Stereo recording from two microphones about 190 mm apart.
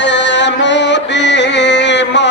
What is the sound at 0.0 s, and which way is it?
Music, 65° left (ahead or behind).